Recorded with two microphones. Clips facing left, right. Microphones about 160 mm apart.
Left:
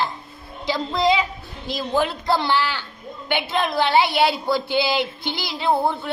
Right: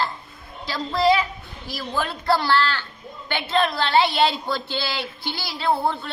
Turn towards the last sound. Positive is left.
turn(degrees=15)  # may be behind; listen again after turning